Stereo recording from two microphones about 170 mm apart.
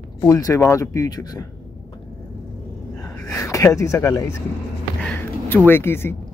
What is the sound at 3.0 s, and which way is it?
Speech, 20° left (ahead or behind).